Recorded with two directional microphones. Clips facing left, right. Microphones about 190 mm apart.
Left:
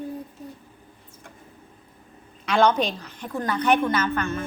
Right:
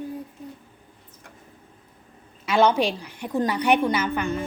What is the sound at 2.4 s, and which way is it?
A woman's voice, 5° right (ahead or behind).